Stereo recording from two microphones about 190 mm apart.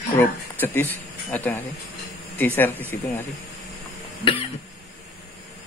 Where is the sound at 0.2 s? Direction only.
10° left (ahead or behind).